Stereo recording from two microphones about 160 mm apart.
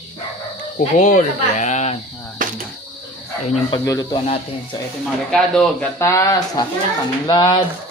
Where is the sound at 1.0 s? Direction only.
50° left (ahead or behind).